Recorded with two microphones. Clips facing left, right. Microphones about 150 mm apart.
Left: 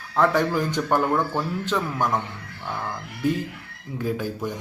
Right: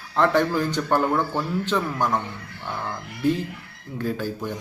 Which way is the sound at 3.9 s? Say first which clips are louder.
Even; 10° left (ahead or behind).